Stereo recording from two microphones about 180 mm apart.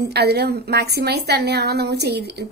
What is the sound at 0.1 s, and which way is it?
A woman's voice, 65° right (ahead or behind).